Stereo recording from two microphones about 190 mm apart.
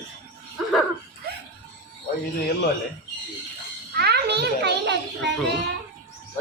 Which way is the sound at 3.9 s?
60° right (ahead or behind).